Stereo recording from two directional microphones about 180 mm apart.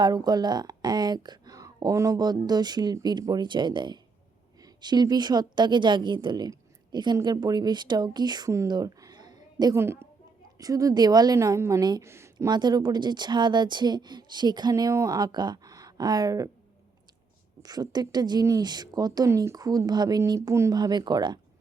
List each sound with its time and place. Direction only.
0.0 s a woman's voice: 20° right (ahead or behind)
17.6 s a woman's voice: 20° right (ahead or behind)